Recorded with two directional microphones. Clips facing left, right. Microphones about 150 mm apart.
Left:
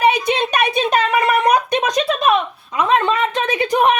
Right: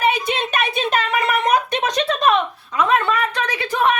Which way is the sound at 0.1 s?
15° left (ahead or behind).